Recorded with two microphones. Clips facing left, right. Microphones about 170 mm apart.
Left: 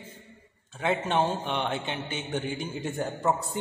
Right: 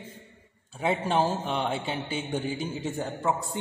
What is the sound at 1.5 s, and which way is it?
Mantra, 5° right (ahead or behind).